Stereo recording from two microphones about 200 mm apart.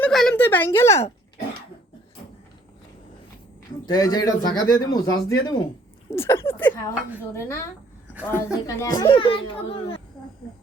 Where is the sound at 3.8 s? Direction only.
20° left (ahead or behind).